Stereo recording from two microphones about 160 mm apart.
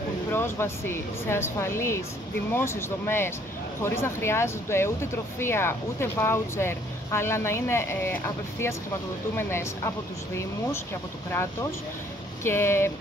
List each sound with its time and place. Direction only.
0.3 s speech: 15° left (ahead or behind)
12.4 s speech: 15° left (ahead or behind)